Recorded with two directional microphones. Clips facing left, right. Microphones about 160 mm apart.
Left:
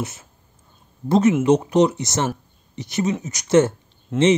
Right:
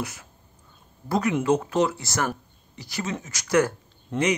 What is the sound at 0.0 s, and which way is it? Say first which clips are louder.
Speech: left 3 dB; 25° left (ahead or behind).